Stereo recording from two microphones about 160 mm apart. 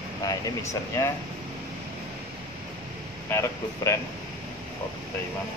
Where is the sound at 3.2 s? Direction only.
15° left (ahead or behind).